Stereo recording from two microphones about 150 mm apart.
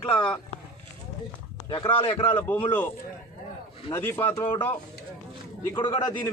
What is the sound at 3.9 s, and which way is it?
Speech, 15° left (ahead or behind).